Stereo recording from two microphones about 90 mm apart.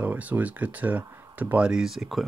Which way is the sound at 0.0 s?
15° right (ahead or behind).